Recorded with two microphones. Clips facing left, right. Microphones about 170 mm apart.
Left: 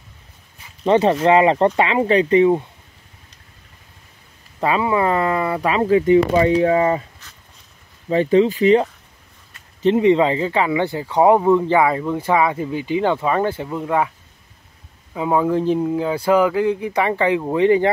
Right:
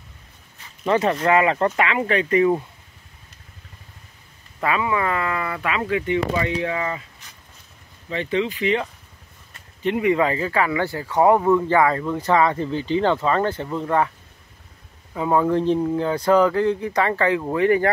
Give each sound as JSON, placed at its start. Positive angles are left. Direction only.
{"t": 0.8, "sound": "speech", "side_deg": 30}
{"t": 4.6, "sound": "speech", "side_deg": 30}
{"t": 8.1, "sound": "speech", "side_deg": 40}
{"t": 9.8, "sound": "speech", "side_deg": 25}
{"t": 15.1, "sound": "speech", "side_deg": 10}